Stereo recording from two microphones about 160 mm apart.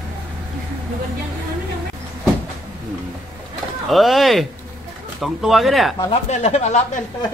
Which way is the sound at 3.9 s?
Centre (ahead or behind).